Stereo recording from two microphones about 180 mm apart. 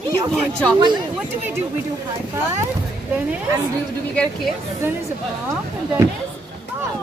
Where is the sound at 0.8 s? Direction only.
25° right (ahead or behind).